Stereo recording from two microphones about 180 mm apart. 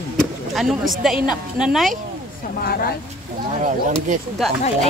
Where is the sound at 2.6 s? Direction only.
60° left (ahead or behind).